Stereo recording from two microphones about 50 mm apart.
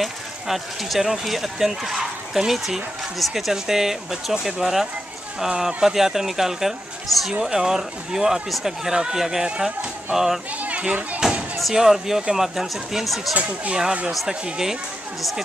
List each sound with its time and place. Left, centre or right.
0.0 s speech: centre
10.6 s children playing: right
11.2 s a sound: centre
11.7 s speech: centre
13.3 s speech: right
14.2 s speech: centre